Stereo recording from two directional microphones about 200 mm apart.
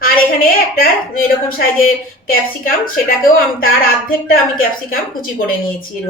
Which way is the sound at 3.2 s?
45° left (ahead or behind).